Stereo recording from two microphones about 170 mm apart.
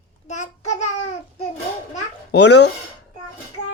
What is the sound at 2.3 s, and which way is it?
Speech, 90° left.